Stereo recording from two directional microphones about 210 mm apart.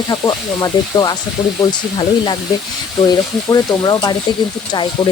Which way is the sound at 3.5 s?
20° left (ahead or behind).